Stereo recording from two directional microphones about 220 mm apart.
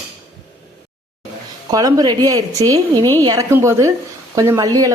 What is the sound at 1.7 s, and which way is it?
Cutlery, 15° right (ahead or behind).